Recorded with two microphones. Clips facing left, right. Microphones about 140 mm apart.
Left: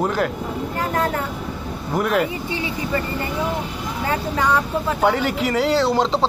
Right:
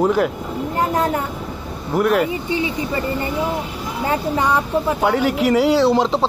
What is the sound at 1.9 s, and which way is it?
Speech, centre (ahead or behind).